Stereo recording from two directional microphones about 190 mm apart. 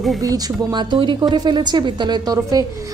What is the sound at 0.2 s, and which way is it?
A woman's voice, 20° right (ahead or behind).